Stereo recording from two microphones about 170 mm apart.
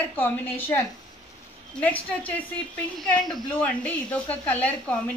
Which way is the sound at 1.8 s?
10° left (ahead or behind).